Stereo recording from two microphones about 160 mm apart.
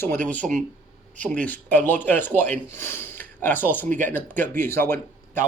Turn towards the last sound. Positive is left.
turn(degrees=15)  # may be behind; listen again after turning